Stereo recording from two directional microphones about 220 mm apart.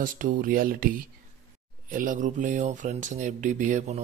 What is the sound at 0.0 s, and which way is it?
Speech, 40° right (ahead or behind).